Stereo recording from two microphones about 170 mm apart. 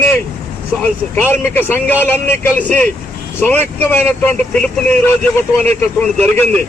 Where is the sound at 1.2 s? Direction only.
10° left (ahead or behind).